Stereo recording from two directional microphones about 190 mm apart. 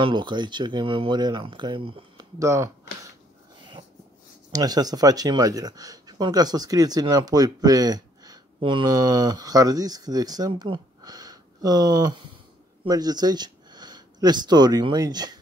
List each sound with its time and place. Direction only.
0.0 s speech: 25° right (ahead or behind)
2.3 s a sound: 15° right (ahead or behind)
4.5 s speech: 20° right (ahead or behind)